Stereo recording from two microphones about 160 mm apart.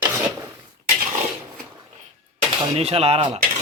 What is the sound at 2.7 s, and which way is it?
Speech, 40° right (ahead or behind).